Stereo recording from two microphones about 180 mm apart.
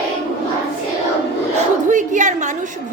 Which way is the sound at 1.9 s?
45° right (ahead or behind).